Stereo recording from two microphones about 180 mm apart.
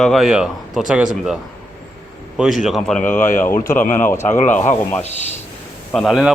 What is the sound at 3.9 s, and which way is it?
Speech, 15° left (ahead or behind).